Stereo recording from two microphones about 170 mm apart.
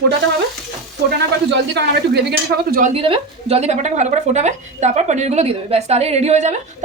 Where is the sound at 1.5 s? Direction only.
85° right; by 2.8 s 65° right (ahead or behind).